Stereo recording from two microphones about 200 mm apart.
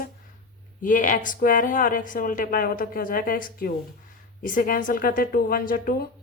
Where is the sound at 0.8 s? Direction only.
40° left (ahead or behind).